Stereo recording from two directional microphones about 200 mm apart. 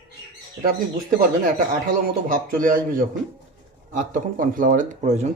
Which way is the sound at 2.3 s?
45° right (ahead or behind).